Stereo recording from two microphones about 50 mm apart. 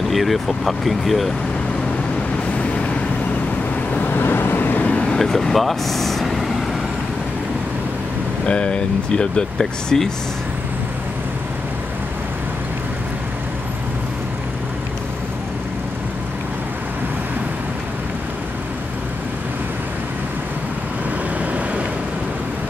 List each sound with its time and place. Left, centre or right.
0.1 s speech: centre
3.9 s vehicle: left
4.9 s vehicle: centre
5.2 s vehicle: centre
8.5 s speech: left